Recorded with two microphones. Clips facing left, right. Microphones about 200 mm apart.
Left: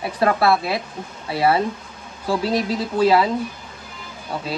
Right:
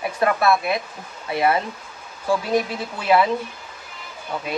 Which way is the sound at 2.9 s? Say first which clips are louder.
Left 3 dB; 35° left (ahead or behind).